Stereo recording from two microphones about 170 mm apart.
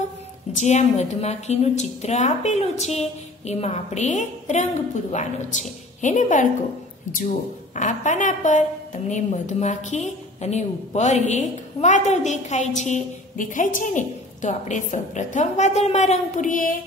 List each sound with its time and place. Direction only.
0.6 s a woman's voice: 40° left (ahead or behind)